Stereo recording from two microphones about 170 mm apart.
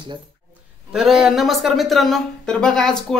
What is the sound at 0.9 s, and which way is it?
Speech, centre (ahead or behind).